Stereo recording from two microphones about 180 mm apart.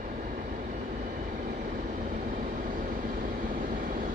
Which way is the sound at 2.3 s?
50° right (ahead or behind).